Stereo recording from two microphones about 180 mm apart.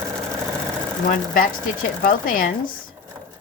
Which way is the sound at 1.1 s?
50° left (ahead or behind).